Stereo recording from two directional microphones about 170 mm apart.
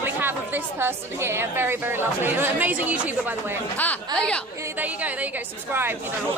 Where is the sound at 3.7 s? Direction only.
5° left (ahead or behind).